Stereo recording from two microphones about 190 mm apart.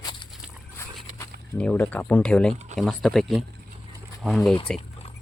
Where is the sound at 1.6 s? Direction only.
5° left (ahead or behind).